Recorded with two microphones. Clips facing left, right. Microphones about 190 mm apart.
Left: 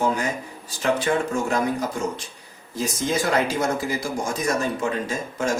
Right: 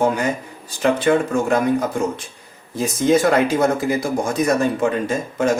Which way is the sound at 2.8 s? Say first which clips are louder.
Right 8 dB; 55° right (ahead or behind).